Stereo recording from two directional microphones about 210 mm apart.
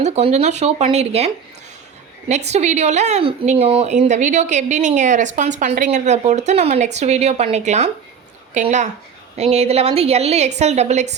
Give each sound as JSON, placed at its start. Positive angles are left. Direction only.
{"t": 0.0, "sound": "a woman's voice", "side_deg": -30}
{"t": 2.5, "sound": "a woman's voice", "side_deg": -35}